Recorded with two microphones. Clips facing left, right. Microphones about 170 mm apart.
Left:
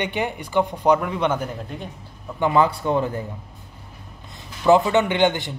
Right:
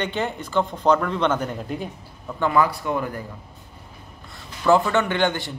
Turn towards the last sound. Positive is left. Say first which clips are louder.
# left 3 dB
turn(degrees=20)  # may be behind; listen again after turning